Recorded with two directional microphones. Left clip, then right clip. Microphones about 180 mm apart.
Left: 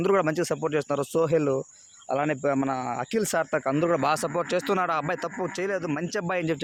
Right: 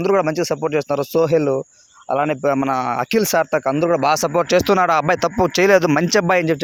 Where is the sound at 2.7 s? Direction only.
50° right (ahead or behind).